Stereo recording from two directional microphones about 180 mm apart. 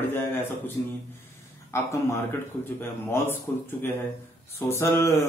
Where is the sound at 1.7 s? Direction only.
15° left (ahead or behind).